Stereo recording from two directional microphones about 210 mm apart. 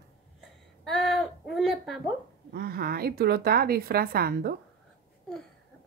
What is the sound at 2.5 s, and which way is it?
A woman's voice, 45° right (ahead or behind).